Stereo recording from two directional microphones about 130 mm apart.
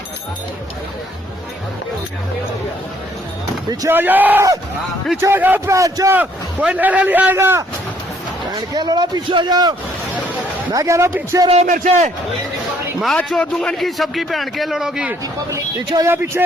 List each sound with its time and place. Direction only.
3.7 s a man's voice: 30° right (ahead or behind)
3.9 s a man's voice: 15° right (ahead or behind)
6.1 s a man's voice: 10° right (ahead or behind)
8.5 s a man's voice: 35° right (ahead or behind)
11.6 s a man's voice: 85° right
13.1 s a man's voice: 10° left (ahead or behind)
15.4 s a man's voice: 25° right (ahead or behind)